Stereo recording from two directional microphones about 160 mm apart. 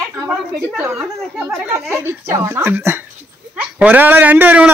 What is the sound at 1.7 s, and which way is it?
A man's voice, 15° right (ahead or behind).